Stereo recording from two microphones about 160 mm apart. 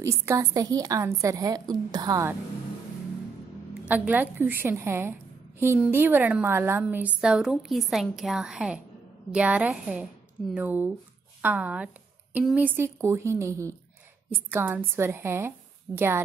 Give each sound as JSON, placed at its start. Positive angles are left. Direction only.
{"t": 0.0, "sound": "a woman's voice", "side_deg": -15}
{"t": 3.8, "sound": "a woman's voice", "side_deg": -10}